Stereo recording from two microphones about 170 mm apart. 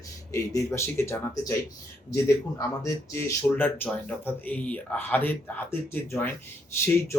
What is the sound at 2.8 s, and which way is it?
Speech, 15° left (ahead or behind).